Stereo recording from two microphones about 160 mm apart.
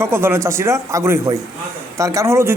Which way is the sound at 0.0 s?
15° right (ahead or behind).